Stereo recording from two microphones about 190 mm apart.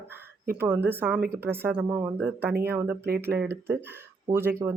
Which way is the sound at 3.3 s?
10° right (ahead or behind).